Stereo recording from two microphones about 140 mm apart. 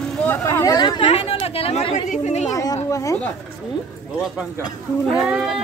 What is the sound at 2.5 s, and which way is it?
Speech, 25° left (ahead or behind).